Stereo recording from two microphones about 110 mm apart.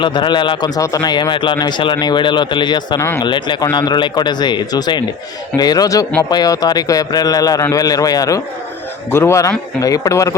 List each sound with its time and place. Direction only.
0.0 s speech: 45° left (ahead or behind)
0.8 s a man's voice: 35° left (ahead or behind)
9.0 s a man's voice: 20° left (ahead or behind)